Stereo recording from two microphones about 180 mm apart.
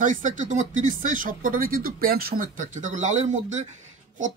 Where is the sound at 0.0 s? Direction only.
45° right (ahead or behind).